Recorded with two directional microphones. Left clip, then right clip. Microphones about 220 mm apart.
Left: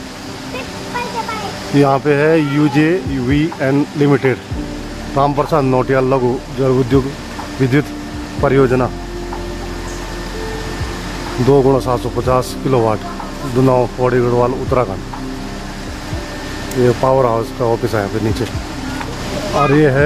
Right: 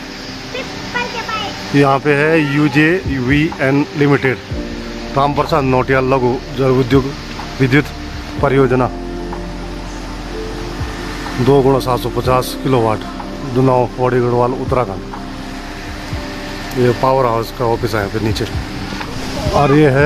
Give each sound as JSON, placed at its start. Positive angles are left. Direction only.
{"t": 1.8, "sound": "speech", "side_deg": -5}
{"t": 11.5, "sound": "speech", "side_deg": -5}
{"t": 16.8, "sound": "speech", "side_deg": -5}
{"t": 19.6, "sound": "speech", "side_deg": -15}